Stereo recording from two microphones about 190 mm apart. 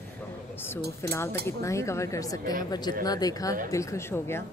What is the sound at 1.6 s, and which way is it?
Speech, 15° left (ahead or behind).